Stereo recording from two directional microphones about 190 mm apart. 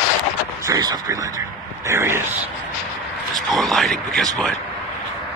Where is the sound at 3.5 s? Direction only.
Centre (ahead or behind).